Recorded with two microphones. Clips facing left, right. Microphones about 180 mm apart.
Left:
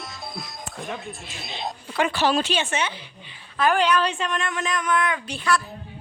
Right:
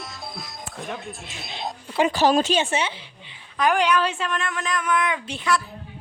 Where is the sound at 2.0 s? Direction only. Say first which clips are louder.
Right 3 dB; 40° right (ahead or behind).